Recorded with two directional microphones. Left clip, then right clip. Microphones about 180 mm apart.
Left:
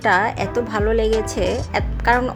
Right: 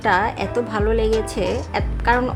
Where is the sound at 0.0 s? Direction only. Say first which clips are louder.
Left 1 dB; 15° left (ahead or behind).